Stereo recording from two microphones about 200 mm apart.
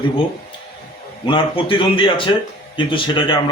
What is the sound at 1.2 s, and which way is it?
A man's voice, 25° left (ahead or behind).